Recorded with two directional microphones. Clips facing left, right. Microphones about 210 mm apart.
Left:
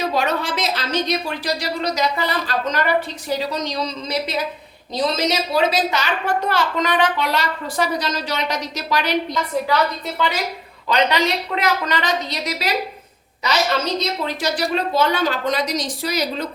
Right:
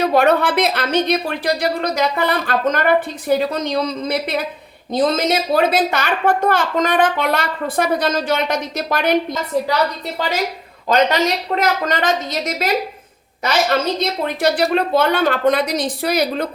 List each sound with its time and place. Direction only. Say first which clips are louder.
0.0 s a woman's voice: right 7 dB; 60° right (ahead or behind)
10.2 s a woman's voice: right 2 dB; 45° right (ahead or behind)
14.0 s speech: right 5 dB; 55° right (ahead or behind)